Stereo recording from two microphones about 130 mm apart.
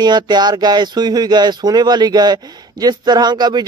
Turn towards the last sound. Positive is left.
turn(degrees=-35)  # may be behind; listen again after turning